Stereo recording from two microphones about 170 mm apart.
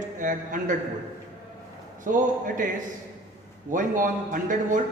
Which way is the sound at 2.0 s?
50° right (ahead or behind).